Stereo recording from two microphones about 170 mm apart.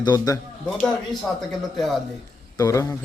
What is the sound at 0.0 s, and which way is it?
Speech, 25° left (ahead or behind).